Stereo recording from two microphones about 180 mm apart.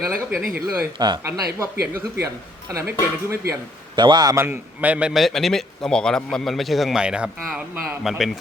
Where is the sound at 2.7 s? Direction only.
15° right (ahead or behind).